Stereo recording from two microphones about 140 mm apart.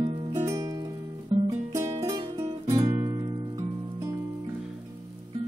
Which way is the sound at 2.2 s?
30° right (ahead or behind).